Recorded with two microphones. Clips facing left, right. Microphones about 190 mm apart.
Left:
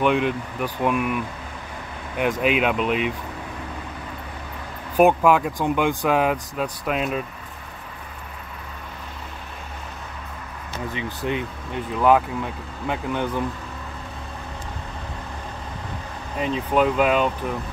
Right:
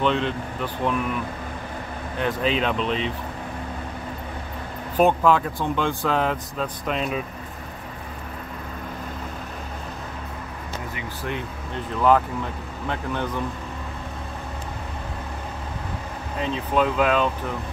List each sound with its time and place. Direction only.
0.0 s speech: 10° left (ahead or behind)
4.9 s speech: 10° left (ahead or behind)
11.0 s speech: 20° left (ahead or behind)
16.3 s speech: 10° left (ahead or behind)